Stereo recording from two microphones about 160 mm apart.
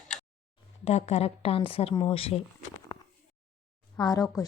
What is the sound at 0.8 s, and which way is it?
A woman's voice, 45° left (ahead or behind).